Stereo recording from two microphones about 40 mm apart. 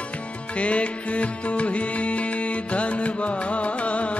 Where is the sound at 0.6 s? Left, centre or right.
Left.